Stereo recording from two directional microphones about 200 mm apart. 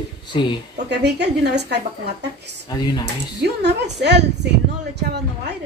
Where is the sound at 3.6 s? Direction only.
55° right (ahead or behind).